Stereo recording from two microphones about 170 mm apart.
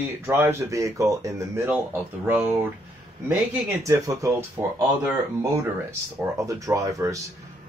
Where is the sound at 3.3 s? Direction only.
20° right (ahead or behind).